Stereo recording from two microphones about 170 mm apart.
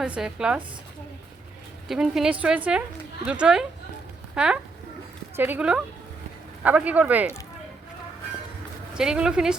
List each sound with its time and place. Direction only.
0.0 s speech: 5° right (ahead or behind)
1.9 s speech: centre (ahead or behind)
9.0 s speech: 5° right (ahead or behind)